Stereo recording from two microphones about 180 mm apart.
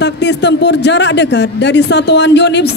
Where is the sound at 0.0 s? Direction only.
75° left (ahead or behind).